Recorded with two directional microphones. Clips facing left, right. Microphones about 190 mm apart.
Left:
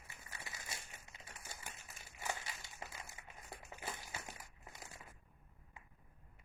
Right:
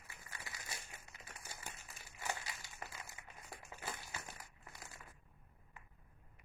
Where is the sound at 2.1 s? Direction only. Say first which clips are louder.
Even; 25° left (ahead or behind).